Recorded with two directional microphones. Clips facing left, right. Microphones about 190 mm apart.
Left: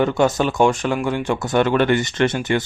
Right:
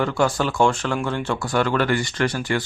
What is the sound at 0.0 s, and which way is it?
Speech, 20° left (ahead or behind).